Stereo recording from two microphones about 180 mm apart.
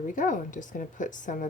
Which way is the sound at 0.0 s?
45° left (ahead or behind).